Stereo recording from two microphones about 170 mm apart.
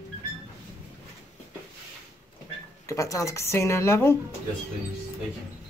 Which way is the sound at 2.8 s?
20° left (ahead or behind).